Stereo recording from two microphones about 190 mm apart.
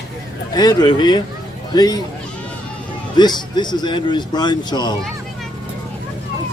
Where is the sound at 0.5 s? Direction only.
20° left (ahead or behind).